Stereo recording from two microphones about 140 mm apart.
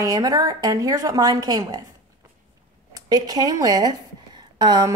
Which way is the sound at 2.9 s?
30° right (ahead or behind).